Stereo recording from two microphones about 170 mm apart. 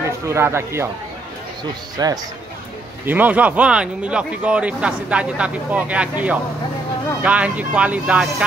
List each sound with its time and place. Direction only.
0.3 s speech: 15° right (ahead or behind)
3.1 s speech: 10° right (ahead or behind)